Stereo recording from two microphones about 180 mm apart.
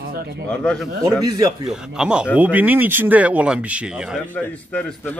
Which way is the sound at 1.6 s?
5° right (ahead or behind).